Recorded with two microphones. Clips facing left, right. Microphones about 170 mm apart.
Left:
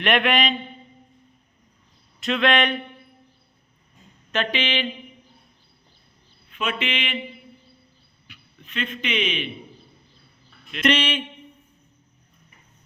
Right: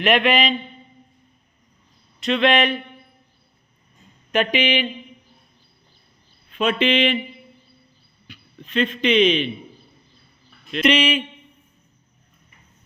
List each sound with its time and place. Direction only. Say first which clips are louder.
0.0 s speech: right 3 dB; centre (ahead or behind)
2.2 s speech: right 3 dB; centre (ahead or behind)
4.3 s speech: right 5 dB; 15° right (ahead or behind)
6.5 s speech: right 8 dB; 35° right (ahead or behind)
8.3 s a man's voice: right 9 dB; 35° right (ahead or behind)
10.8 s speech: right 3 dB; 10° right (ahead or behind)